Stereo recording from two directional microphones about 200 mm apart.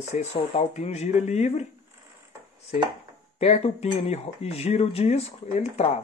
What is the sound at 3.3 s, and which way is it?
Speech, 30° left (ahead or behind).